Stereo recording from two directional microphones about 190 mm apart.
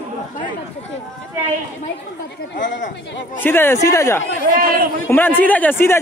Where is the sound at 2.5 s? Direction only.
70° left (ahead or behind).